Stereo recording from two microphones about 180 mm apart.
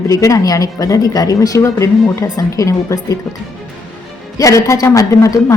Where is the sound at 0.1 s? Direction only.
20° left (ahead or behind).